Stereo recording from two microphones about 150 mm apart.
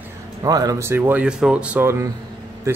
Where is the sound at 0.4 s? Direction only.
25° right (ahead or behind).